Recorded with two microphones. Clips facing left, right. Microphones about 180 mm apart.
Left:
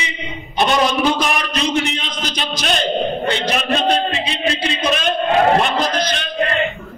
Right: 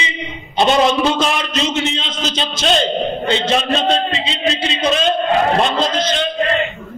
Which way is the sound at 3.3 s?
25° right (ahead or behind).